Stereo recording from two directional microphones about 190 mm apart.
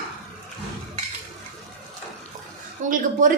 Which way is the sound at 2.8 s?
40° right (ahead or behind).